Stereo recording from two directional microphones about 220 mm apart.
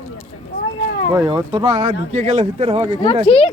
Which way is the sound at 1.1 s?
20° right (ahead or behind).